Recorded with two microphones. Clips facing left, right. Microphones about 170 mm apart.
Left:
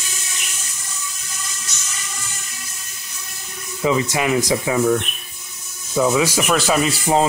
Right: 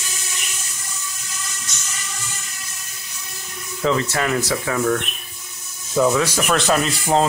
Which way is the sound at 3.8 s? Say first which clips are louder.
Left 1 dB; 10° left (ahead or behind).